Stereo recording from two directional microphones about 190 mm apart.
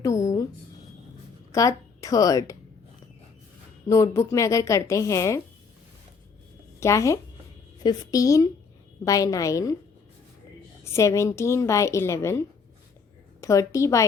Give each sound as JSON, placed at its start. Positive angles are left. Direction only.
{"t": 0.0, "sound": "a sound", "side_deg": 15}
{"t": 1.5, "sound": "speech", "side_deg": 15}
{"t": 3.8, "sound": "a woman's voice", "side_deg": 15}
{"t": 6.7, "sound": "a woman's voice", "side_deg": 15}
{"t": 10.8, "sound": "a woman's voice", "side_deg": 15}